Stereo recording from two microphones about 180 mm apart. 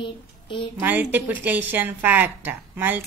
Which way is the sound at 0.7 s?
10° right (ahead or behind).